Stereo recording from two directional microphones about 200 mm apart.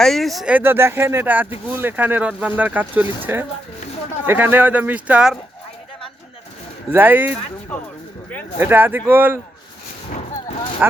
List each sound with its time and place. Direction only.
0.0 s speech: centre (ahead or behind)
6.9 s speech: 10° right (ahead or behind)
8.5 s speech: 10° right (ahead or behind)
10.1 s a sound: 30° left (ahead or behind)